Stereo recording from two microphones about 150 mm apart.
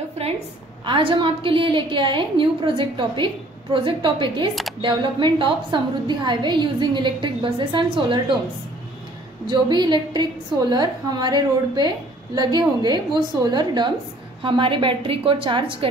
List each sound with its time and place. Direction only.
0.8 s a woman's voice: 35° right (ahead or behind)
9.5 s a woman's voice: 30° right (ahead or behind)